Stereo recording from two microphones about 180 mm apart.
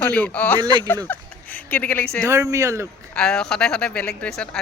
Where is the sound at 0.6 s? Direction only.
25° right (ahead or behind).